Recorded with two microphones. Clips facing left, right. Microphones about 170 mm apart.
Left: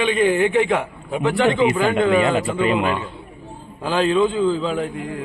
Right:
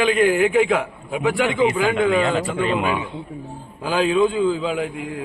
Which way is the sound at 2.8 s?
5° right (ahead or behind).